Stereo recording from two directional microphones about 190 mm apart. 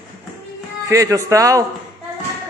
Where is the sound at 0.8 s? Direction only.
15° right (ahead or behind).